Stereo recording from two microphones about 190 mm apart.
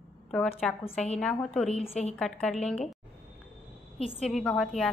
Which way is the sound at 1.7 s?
35° left (ahead or behind).